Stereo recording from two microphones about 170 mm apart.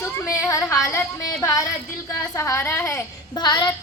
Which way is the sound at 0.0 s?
15° left (ahead or behind).